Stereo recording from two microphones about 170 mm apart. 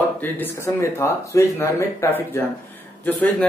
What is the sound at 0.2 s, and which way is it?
Speech, 15° left (ahead or behind).